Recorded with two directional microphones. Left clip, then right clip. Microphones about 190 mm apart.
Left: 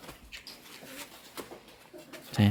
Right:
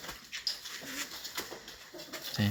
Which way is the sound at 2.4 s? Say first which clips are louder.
Left 6 dB; 25° left (ahead or behind).